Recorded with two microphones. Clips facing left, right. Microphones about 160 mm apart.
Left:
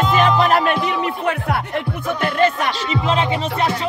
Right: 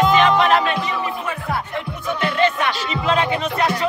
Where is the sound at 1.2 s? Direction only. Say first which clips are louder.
Left 4 dB; 75° left (ahead or behind).